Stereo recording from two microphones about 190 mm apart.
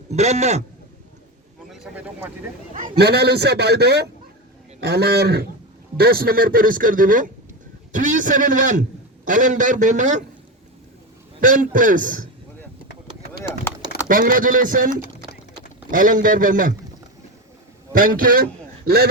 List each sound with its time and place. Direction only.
0.1 s a man's voice: 35° right (ahead or behind)
1.7 s speech: centre (ahead or behind)
2.7 s a man's voice: 50° right (ahead or behind)
11.3 s speech: 45° right (ahead or behind)
14.1 s speech: 45° right (ahead or behind)
15.0 s a sound: 55° left (ahead or behind)
15.9 s speech: 45° right (ahead or behind)
17.9 s speech: 50° right (ahead or behind)